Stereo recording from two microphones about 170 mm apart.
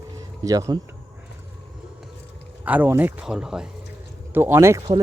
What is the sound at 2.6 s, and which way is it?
Speech, 10° right (ahead or behind).